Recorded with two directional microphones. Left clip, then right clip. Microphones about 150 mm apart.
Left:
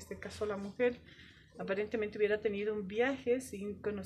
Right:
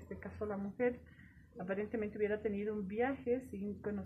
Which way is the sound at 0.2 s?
30° left (ahead or behind).